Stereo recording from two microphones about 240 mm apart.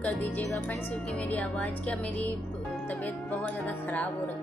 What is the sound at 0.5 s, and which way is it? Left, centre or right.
Speech, centre.